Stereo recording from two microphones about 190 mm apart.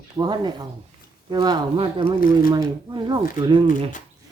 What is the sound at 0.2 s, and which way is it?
Speech, 25° right (ahead or behind).